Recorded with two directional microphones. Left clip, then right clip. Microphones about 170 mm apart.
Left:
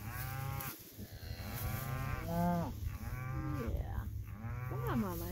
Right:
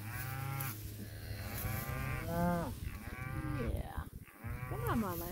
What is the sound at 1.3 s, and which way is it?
Livestock, 50° left (ahead or behind).